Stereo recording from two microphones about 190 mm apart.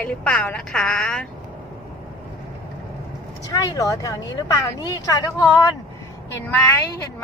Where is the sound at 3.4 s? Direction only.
15° left (ahead or behind).